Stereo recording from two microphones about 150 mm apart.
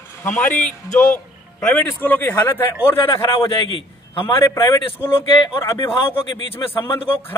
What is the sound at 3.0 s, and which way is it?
Speech, 35° left (ahead or behind).